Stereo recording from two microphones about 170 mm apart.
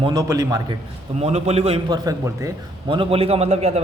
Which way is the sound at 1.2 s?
40° right (ahead or behind).